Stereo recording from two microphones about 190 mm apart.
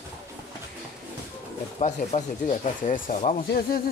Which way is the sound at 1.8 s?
35° left (ahead or behind).